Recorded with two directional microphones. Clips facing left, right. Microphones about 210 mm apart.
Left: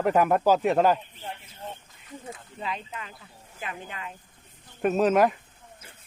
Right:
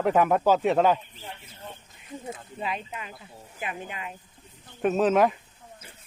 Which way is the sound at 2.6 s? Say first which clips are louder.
Right 1 dB; 15° right (ahead or behind).